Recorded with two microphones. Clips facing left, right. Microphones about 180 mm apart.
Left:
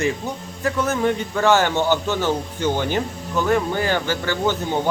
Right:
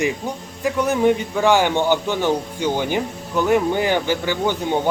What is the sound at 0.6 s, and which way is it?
Speech, 15° right (ahead or behind).